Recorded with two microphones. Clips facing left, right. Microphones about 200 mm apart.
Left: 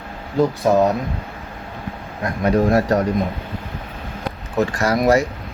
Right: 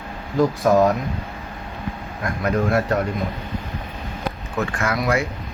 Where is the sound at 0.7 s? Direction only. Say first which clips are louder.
Even; 25° left (ahead or behind).